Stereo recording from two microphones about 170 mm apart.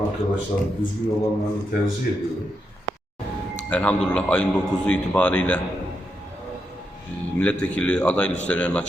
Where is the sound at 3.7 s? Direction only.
10° left (ahead or behind).